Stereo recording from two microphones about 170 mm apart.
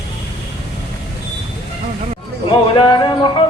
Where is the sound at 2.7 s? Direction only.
25° left (ahead or behind).